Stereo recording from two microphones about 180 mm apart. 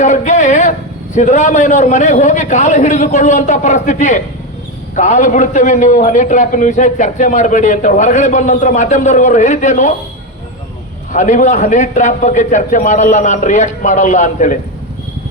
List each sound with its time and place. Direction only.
0.0 s a man's voice: 45° left (ahead or behind)
11.1 s a man's voice: 45° left (ahead or behind)